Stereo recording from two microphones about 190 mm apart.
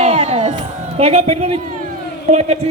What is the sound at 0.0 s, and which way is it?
Crowd, 35° right (ahead or behind).